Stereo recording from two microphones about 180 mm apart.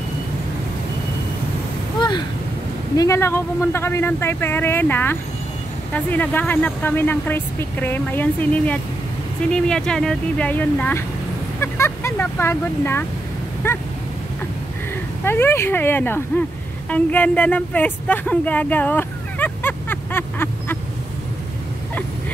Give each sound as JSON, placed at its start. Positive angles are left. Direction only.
{"t": 2.0, "sound": "a sound", "side_deg": 25}
{"t": 3.0, "sound": "speech", "side_deg": 15}
{"t": 15.2, "sound": "speech", "side_deg": 10}